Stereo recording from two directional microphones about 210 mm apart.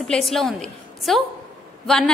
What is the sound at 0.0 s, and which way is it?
A woman's voice, centre (ahead or behind).